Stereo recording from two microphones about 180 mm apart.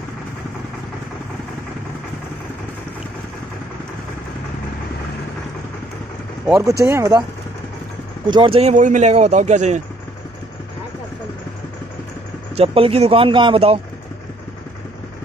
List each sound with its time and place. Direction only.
6.4 s speech: 15° right (ahead or behind)
8.3 s speech: 30° right (ahead or behind)
12.5 s speech: 30° right (ahead or behind)